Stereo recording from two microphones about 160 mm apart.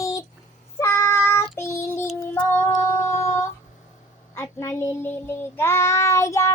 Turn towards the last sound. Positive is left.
turn(degrees=20)  # may be behind; listen again after turning